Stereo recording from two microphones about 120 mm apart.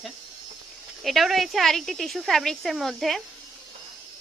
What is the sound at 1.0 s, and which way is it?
A woman's voice, centre (ahead or behind).